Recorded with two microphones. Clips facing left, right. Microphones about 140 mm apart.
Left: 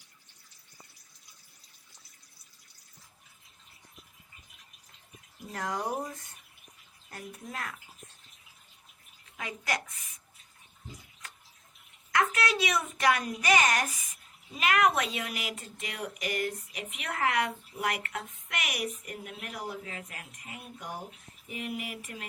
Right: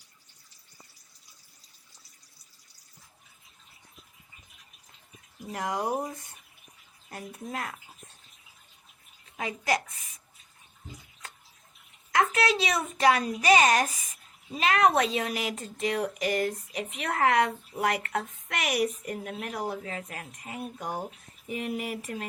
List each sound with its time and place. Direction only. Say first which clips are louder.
5.5 s speech: right 3 dB; 10° right (ahead or behind)
7.1 s a woman's voice: right 4 dB; 20° right (ahead or behind)
9.4 s a woman's voice: right 6 dB; 25° right (ahead or behind)
12.1 s a woman's voice: right 3 dB; 25° right (ahead or behind)